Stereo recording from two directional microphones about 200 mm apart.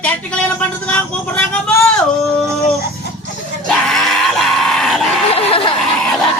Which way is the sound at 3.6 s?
Centre (ahead or behind).